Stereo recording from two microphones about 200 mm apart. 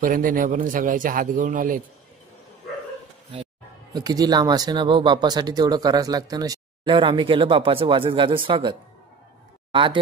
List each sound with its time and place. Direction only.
0.0 s speech: 45° right (ahead or behind)
3.9 s speech: 20° right (ahead or behind)
9.7 s a sound: 25° right (ahead or behind)